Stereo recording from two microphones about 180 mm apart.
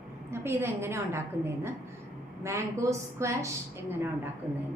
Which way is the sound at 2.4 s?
15° right (ahead or behind).